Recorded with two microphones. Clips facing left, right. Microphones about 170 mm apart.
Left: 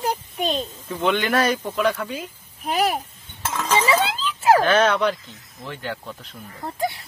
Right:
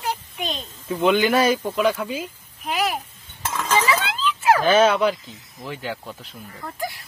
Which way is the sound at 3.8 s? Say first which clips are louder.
Left 2 dB; 30° left (ahead or behind).